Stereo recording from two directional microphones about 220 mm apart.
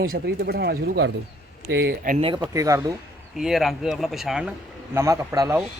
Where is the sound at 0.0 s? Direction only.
45° right (ahead or behind).